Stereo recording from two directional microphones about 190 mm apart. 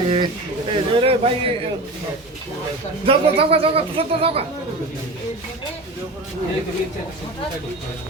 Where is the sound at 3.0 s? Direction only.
30° right (ahead or behind).